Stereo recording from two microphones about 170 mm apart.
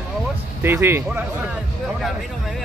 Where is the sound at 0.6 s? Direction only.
15° right (ahead or behind).